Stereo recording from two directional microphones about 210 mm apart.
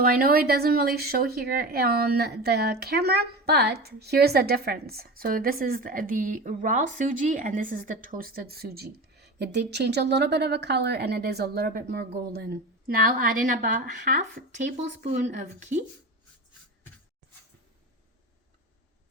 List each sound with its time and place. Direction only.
0.0 s speech: 45° right (ahead or behind)